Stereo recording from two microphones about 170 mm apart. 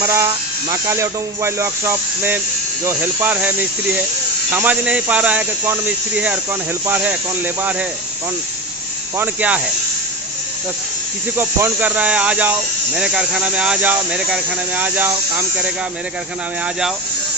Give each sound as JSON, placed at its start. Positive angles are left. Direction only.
{"t": 0.0, "sound": "speech", "side_deg": -15}
{"t": 9.1, "sound": "speech", "side_deg": -10}
{"t": 11.3, "sound": "speech", "side_deg": -10}